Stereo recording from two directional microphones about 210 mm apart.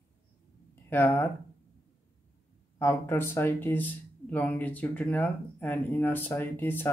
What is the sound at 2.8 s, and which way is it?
Speech, 10° left (ahead or behind).